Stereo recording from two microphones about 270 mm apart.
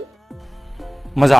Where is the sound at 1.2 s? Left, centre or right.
Centre.